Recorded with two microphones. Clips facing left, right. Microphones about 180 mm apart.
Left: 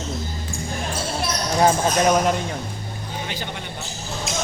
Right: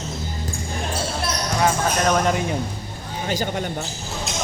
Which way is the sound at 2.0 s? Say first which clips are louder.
Left 1 dB; 10° left (ahead or behind).